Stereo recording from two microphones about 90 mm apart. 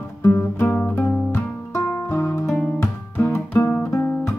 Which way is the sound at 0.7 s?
15° left (ahead or behind).